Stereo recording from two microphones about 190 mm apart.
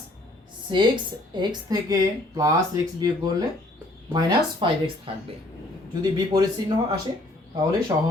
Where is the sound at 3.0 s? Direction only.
20° right (ahead or behind).